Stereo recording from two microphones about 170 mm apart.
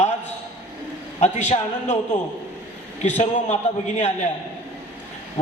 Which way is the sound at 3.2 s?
40° left (ahead or behind).